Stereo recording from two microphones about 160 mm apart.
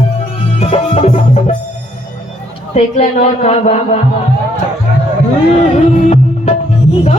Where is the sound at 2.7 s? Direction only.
45° left (ahead or behind).